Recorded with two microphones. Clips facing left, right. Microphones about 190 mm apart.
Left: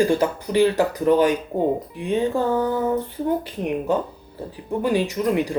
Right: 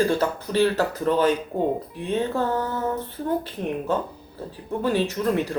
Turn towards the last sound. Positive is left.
turn(degrees=15)  # may be behind; listen again after turning